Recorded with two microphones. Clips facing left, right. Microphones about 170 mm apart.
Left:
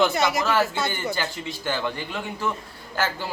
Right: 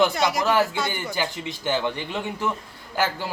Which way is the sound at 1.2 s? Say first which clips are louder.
Right 2 dB; 20° right (ahead or behind).